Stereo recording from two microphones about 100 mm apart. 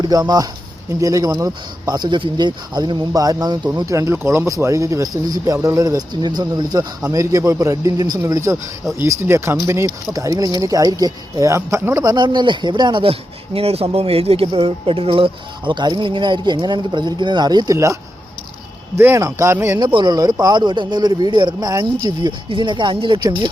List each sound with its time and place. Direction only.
0.0 s speech: 40° right (ahead or behind)
3.1 s speech: 35° right (ahead or behind)
3.9 s speech: 30° right (ahead or behind)
8.2 s speech: 30° right (ahead or behind)
12.1 s speech: 50° right (ahead or behind)
18.9 s speech: 25° right (ahead or behind)
19.8 s speech: 50° right (ahead or behind)